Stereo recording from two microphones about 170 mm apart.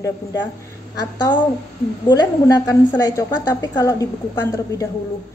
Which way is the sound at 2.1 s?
25° left (ahead or behind).